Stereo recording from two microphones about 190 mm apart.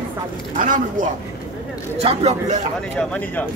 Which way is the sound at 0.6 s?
45° right (ahead or behind).